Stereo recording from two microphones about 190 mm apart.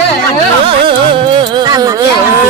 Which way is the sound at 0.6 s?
25° right (ahead or behind).